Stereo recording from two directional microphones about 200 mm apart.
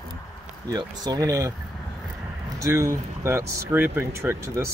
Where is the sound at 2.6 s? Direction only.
15° right (ahead or behind).